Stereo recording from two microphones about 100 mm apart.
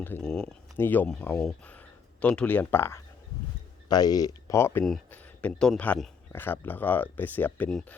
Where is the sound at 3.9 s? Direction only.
40° left (ahead or behind).